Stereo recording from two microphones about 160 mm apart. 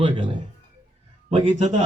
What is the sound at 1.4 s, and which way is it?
Speech, 45° right (ahead or behind).